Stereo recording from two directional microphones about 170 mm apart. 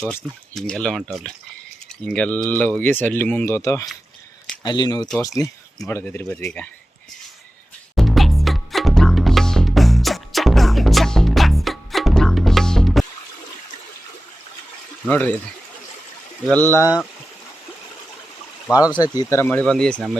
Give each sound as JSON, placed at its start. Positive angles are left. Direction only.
{"t": 0.0, "sound": "speech", "side_deg": 0}
{"t": 5.9, "sound": "speech", "side_deg": 10}
{"t": 7.9, "sound": "music", "side_deg": 0}
{"t": 15.0, "sound": "speech", "side_deg": 10}
{"t": 16.5, "sound": "speech", "side_deg": 10}
{"t": 18.9, "sound": "speech", "side_deg": 25}
{"t": 19.5, "sound": "speech", "side_deg": 5}